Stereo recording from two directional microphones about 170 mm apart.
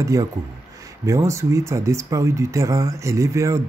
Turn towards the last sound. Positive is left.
turn(degrees=-15)  # may be behind; listen again after turning